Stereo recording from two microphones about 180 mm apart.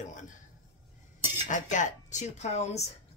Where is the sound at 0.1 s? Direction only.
45° left (ahead or behind).